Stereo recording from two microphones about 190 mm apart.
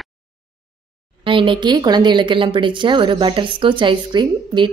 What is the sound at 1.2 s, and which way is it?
A woman's voice, 25° right (ahead or behind).